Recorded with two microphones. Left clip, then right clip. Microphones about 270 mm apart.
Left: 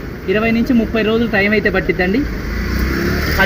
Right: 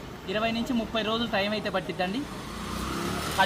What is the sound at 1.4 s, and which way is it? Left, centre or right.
Speech, right.